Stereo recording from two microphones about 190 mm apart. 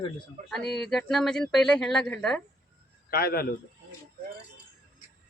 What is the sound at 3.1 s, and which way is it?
Speech, 50° left (ahead or behind).